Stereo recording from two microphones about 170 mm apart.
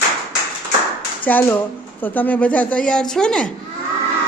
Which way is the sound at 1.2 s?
10° left (ahead or behind).